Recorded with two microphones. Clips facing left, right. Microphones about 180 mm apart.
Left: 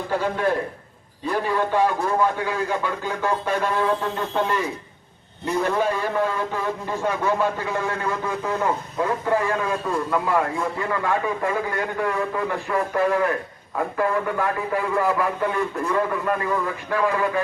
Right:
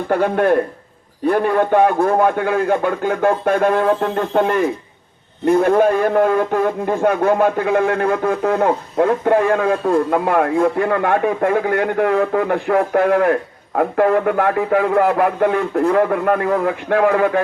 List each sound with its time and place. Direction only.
0.1 s a man's voice: 60° right (ahead or behind)